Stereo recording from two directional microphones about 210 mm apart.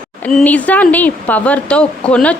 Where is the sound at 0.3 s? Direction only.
5° left (ahead or behind).